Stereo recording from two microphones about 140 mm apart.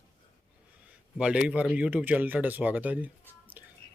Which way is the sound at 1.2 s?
5° right (ahead or behind).